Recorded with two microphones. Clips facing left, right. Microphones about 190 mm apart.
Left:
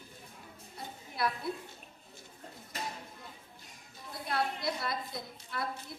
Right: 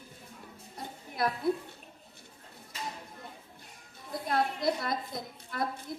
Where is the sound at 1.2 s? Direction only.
45° right (ahead or behind).